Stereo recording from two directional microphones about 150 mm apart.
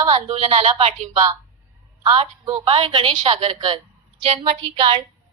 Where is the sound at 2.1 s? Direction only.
40° right (ahead or behind).